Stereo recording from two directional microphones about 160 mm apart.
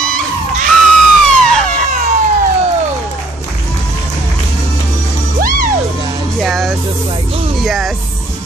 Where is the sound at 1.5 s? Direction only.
5° left (ahead or behind).